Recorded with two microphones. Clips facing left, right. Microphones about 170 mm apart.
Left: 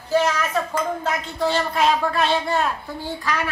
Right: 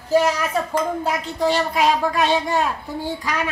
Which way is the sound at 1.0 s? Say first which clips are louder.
Right 2 dB; 15° right (ahead or behind).